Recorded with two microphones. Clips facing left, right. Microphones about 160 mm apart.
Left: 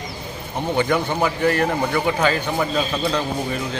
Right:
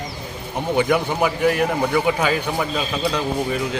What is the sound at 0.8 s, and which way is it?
A man's voice, 5° right (ahead or behind).